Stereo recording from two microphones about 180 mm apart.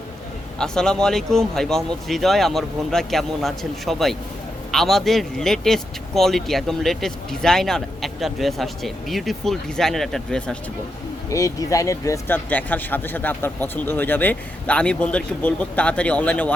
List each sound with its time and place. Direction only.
0.6 s speech: 5° left (ahead or behind)
11.3 s speech: 20° left (ahead or behind)